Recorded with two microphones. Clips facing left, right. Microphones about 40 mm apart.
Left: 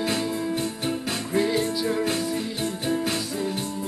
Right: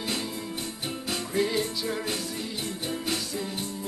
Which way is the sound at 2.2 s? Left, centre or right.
Centre.